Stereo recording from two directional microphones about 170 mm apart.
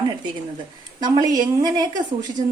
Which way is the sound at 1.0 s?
25° right (ahead or behind).